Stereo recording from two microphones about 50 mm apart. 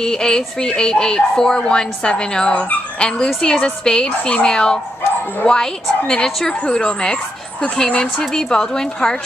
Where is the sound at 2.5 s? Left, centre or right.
Left.